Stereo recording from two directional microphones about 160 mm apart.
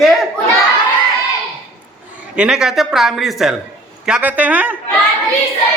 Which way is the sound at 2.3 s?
5° right (ahead or behind).